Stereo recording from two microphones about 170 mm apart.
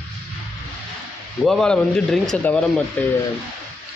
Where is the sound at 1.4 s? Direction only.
Centre (ahead or behind).